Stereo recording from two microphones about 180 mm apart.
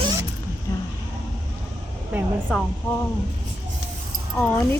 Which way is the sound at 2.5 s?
5° right (ahead or behind).